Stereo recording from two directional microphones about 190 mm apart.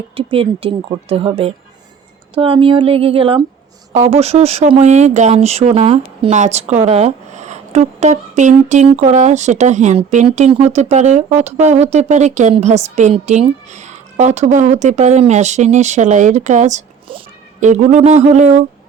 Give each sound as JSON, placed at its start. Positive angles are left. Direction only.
{"t": 0.2, "sound": "a woman's voice", "side_deg": -30}